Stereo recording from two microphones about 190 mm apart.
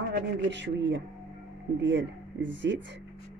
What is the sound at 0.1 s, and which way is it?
Speech, 65° right (ahead or behind).